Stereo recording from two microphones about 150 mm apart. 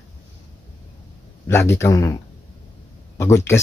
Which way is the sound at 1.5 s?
15° left (ahead or behind).